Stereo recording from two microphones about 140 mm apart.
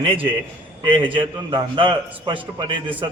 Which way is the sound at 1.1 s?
35° right (ahead or behind).